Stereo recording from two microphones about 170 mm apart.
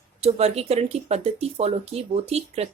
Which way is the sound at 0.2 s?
35° right (ahead or behind).